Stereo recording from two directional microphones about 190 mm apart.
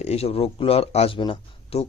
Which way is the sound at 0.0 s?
35° left (ahead or behind).